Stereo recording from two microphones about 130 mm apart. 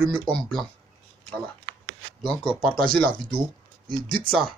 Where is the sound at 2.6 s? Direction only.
5° left (ahead or behind).